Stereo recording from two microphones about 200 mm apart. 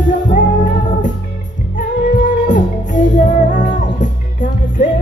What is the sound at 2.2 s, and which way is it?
Music, 40° left (ahead or behind).